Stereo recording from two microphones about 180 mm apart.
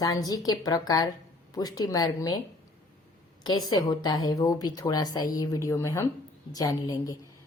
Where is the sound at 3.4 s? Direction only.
20° left (ahead or behind).